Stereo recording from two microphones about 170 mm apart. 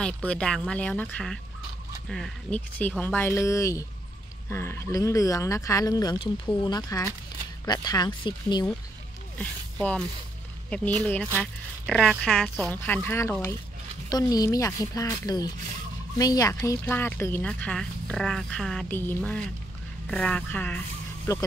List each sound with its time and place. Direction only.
0.0 s speech: 5° left (ahead or behind); by 8.6 s 25° left (ahead or behind)
9.4 s speech: 5° left (ahead or behind)
11.8 s speech: centre (ahead or behind); by 21.4 s 15° left (ahead or behind)